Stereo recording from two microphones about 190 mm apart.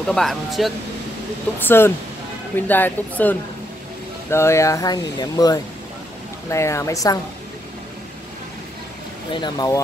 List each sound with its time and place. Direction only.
0.0 s speech: centre (ahead or behind)
1.6 s speech: 10° left (ahead or behind)
9.3 s speech: 20° left (ahead or behind)